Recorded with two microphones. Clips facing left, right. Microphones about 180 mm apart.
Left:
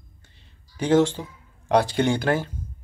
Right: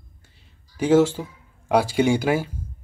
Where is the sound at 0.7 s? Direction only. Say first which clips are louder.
Right 2 dB; 5° right (ahead or behind).